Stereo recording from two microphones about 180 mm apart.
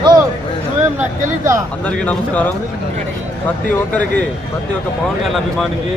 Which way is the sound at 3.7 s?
10° left (ahead or behind).